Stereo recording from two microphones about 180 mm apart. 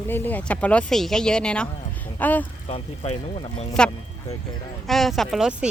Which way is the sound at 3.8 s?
5° left (ahead or behind).